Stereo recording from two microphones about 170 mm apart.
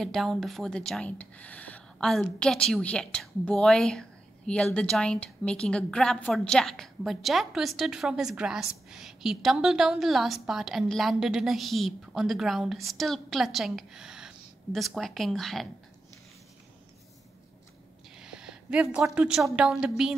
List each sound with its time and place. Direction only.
0.0 s a woman's voice: centre (ahead or behind)
18.1 s a sound: 5° right (ahead or behind)
19.0 s a woman's voice: 5° right (ahead or behind)